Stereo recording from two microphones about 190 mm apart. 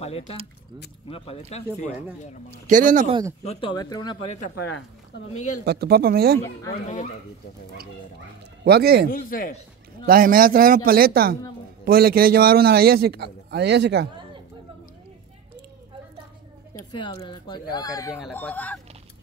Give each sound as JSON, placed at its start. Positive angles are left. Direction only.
{"t": 1.0, "sound": "speech", "side_deg": 30}
{"t": 2.6, "sound": "speech", "side_deg": -45}
{"t": 3.1, "sound": "speech", "side_deg": -20}
{"t": 3.4, "sound": "speech", "side_deg": 25}
{"t": 4.6, "sound": "speech", "side_deg": 65}
{"t": 5.7, "sound": "a man's voice", "side_deg": -55}
{"t": 8.6, "sound": "a man's voice", "side_deg": -55}
{"t": 9.1, "sound": "speech", "side_deg": 45}
{"t": 10.0, "sound": "a man's voice", "side_deg": -50}
{"t": 16.9, "sound": "speech", "side_deg": 25}